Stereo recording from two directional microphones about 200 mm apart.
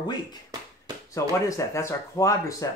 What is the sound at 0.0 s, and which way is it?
Speech, 20° left (ahead or behind).